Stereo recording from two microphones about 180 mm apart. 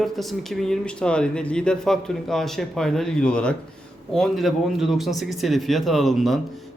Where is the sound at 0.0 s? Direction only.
Centre (ahead or behind).